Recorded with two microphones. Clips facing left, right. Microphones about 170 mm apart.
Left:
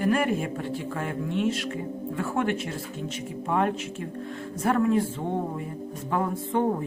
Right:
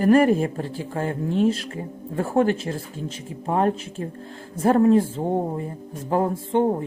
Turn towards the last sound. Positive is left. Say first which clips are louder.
# right 5 dB
turn(degrees=-30)  # may be behind; listen again after turning